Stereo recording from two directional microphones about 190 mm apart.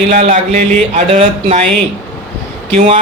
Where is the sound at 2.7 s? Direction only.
30° right (ahead or behind).